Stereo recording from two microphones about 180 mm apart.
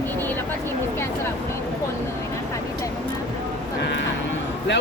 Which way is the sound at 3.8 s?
75° left (ahead or behind).